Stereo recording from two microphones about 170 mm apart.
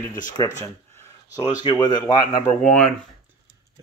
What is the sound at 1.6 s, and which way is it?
Speech, 25° left (ahead or behind).